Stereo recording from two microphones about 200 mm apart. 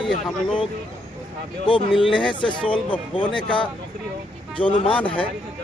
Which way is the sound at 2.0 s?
25° left (ahead or behind).